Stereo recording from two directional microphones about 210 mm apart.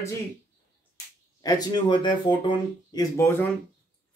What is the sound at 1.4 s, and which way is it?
Speech, 20° left (ahead or behind).